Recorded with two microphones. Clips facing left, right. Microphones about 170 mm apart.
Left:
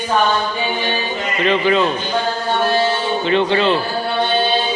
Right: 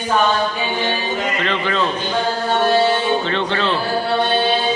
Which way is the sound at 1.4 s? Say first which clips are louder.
Left 5 dB; 10° left (ahead or behind).